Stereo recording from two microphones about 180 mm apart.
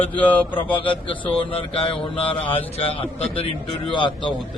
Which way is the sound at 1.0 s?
30° left (ahead or behind).